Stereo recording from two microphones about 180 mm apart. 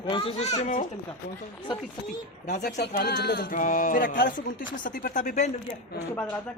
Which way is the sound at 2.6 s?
65° left (ahead or behind).